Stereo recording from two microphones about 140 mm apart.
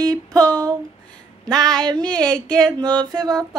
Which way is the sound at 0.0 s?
25° right (ahead or behind).